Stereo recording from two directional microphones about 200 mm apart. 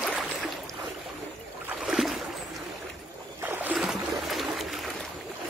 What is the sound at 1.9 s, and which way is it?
Boat, centre (ahead or behind).